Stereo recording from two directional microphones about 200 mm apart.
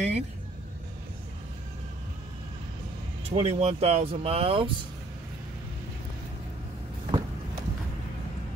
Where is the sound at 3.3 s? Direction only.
30° right (ahead or behind).